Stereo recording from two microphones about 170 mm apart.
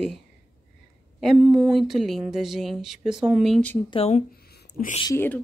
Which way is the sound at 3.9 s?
35° left (ahead or behind).